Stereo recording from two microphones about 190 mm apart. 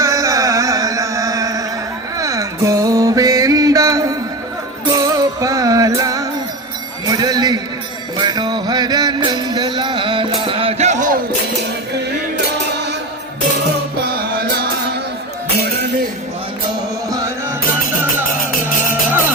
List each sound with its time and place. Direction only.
0.0 s music: 15° right (ahead or behind)
7.1 s a sound: 20° right (ahead or behind)
8.2 s music: 20° right (ahead or behind); by 11.2 s 40° right (ahead or behind)
14.0 s music: 55° right (ahead or behind)